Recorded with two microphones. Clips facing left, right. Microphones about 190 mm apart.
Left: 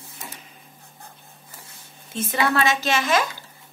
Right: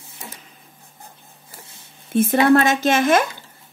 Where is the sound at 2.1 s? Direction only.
60° right (ahead or behind).